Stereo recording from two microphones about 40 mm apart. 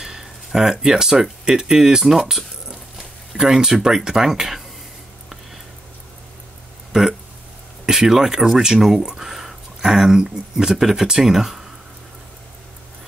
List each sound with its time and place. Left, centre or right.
0.0 s speech: centre
2.0 s a sound: centre
3.3 s speech: centre
6.9 s speech: centre
9.0 s a sound: centre
9.8 s speech: centre